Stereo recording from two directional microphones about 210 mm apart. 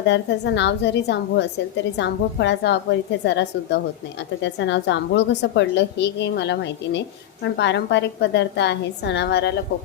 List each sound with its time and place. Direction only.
0.0 s a woman's voice: 55° left (ahead or behind)